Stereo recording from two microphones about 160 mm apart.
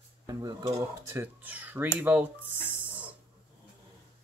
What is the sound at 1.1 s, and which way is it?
Speech, 10° right (ahead or behind).